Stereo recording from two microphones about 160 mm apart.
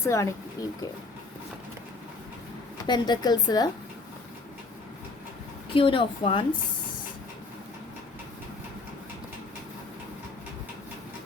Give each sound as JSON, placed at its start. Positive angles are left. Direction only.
{"t": 0.0, "sound": "speech", "side_deg": 20}
{"t": 2.8, "sound": "speech", "side_deg": 25}
{"t": 5.7, "sound": "a woman's voice", "side_deg": 35}